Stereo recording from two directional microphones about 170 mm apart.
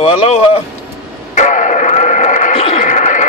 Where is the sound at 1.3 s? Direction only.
45° left (ahead or behind).